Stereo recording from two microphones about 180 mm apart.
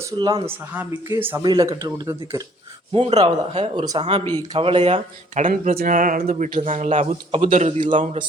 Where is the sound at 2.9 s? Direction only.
35° right (ahead or behind).